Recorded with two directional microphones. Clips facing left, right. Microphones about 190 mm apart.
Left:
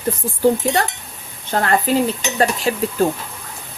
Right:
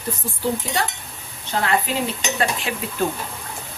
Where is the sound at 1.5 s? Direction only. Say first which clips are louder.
Left 4 dB; 50° left (ahead or behind).